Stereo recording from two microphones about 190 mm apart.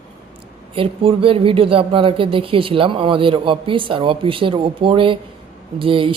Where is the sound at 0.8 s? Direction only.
30° right (ahead or behind).